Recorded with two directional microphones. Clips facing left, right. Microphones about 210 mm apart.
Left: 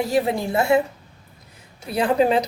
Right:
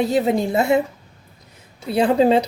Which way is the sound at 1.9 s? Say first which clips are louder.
Right 3 dB; 25° right (ahead or behind).